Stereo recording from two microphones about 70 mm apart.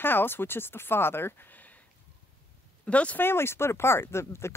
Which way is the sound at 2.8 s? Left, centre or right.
Centre.